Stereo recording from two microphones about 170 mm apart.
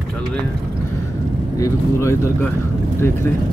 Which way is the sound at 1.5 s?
15° left (ahead or behind).